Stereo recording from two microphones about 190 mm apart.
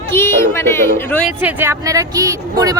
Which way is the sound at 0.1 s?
15° left (ahead or behind).